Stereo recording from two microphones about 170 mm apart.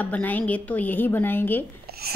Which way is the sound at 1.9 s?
65° right (ahead or behind).